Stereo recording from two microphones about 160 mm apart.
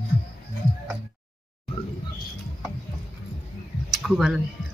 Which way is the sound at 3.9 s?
Centre (ahead or behind).